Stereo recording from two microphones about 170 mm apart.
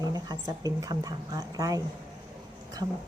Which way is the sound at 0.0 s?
20° right (ahead or behind).